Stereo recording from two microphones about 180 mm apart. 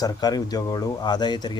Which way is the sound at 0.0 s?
20° left (ahead or behind).